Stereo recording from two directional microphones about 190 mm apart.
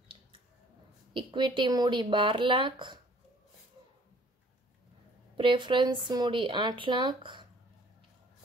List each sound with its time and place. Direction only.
1.1 s speech: 25° right (ahead or behind)
5.4 s speech: 25° right (ahead or behind)